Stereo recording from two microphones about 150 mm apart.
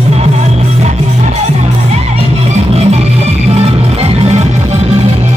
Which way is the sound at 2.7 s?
45° right (ahead or behind).